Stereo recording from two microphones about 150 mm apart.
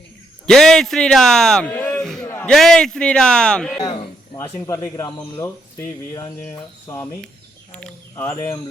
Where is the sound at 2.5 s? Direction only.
Centre (ahead or behind).